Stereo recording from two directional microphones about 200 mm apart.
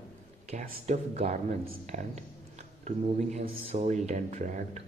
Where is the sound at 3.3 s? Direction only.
35° right (ahead or behind).